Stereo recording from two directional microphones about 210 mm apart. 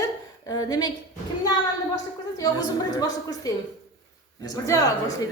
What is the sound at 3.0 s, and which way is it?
A woman's voice, 15° left (ahead or behind).